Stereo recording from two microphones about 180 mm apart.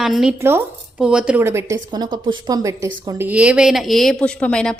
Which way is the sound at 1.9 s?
25° right (ahead or behind).